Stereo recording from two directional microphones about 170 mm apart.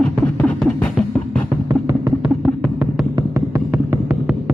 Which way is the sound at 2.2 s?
5° right (ahead or behind).